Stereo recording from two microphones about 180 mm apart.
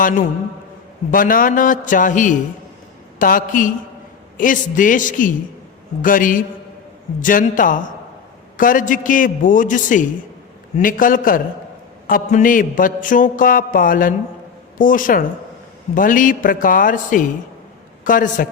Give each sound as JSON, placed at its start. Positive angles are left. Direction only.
{"t": 1.1, "sound": "a man's voice", "side_deg": 50}